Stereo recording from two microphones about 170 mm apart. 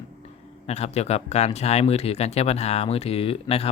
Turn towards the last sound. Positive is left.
turn(degrees=35)  # may be behind; listen again after turning